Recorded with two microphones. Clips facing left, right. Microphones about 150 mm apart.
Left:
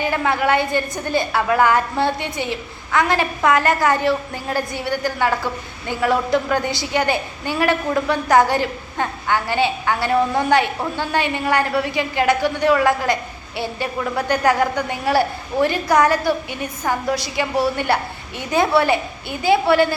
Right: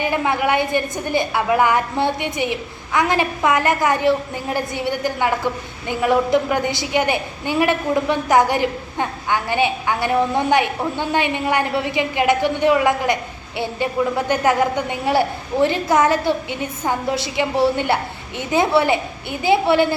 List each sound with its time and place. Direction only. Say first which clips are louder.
0.0 s a woman's voice: even; 15° right (ahead or behind)